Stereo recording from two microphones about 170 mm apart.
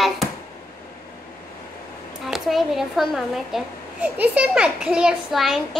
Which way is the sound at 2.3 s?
Centre (ahead or behind).